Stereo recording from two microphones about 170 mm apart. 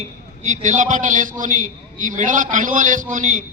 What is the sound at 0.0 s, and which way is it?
A man's voice, 45° right (ahead or behind).